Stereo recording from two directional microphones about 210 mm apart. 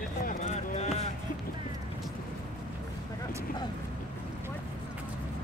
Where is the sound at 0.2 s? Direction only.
35° left (ahead or behind).